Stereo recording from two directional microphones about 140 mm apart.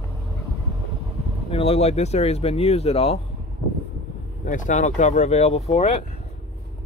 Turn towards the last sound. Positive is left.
turn(degrees=50)  # may be behind; listen again after turning